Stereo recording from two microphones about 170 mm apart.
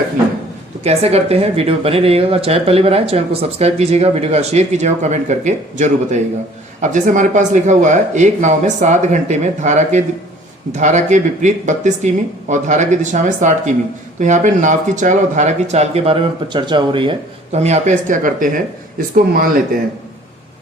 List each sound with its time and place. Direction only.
0.9 s speech: 35° right (ahead or behind); by 19.5 s 55° right (ahead or behind)